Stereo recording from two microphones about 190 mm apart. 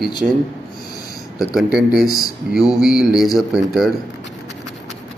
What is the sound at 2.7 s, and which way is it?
A man's voice, centre (ahead or behind).